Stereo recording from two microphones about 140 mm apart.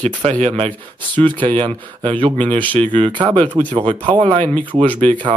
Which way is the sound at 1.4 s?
35° right (ahead or behind).